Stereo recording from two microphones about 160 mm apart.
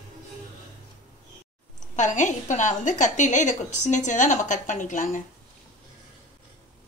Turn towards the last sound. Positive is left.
turn(degrees=55)  # may be behind; listen again after turning